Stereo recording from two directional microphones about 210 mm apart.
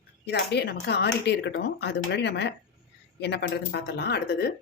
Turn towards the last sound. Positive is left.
turn(degrees=50)  # may be behind; listen again after turning